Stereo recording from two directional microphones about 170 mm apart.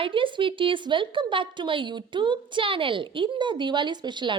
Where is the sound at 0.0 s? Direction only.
30° right (ahead or behind).